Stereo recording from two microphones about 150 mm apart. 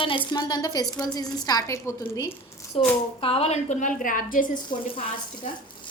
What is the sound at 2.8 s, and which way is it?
A woman's voice, 40° left (ahead or behind).